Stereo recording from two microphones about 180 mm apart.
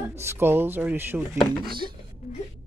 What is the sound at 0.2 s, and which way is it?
Speech, 10° right (ahead or behind).